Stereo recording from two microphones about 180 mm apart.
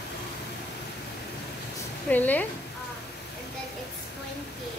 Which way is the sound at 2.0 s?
10° left (ahead or behind).